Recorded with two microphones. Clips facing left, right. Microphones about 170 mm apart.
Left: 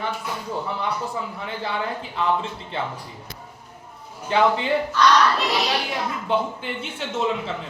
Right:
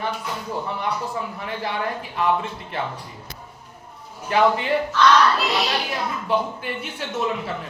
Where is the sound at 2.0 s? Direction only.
25° left (ahead or behind).